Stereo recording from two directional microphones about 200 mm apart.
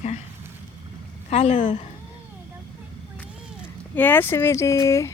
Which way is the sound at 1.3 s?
35° left (ahead or behind).